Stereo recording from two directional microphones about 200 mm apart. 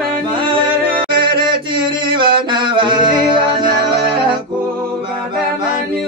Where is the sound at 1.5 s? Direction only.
25° right (ahead or behind).